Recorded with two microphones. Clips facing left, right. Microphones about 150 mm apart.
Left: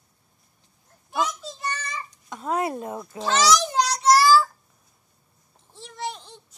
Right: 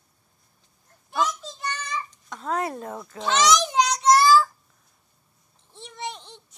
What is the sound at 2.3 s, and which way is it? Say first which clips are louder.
A child's voice: left 2 dB; 15° left (ahead or behind).